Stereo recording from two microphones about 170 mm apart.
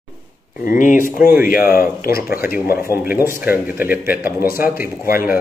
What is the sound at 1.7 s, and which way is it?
Speech, 60° left (ahead or behind).